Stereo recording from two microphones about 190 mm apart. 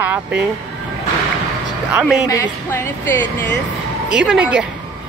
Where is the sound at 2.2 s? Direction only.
15° left (ahead or behind).